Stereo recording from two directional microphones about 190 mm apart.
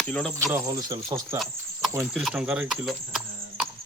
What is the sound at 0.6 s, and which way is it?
Speech, 20° right (ahead or behind).